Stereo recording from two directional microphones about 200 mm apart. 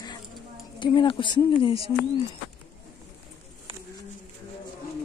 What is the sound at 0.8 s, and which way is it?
Speech, 25° left (ahead or behind).